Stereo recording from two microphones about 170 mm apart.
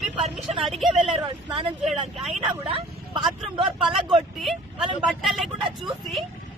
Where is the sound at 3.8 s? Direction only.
Centre (ahead or behind).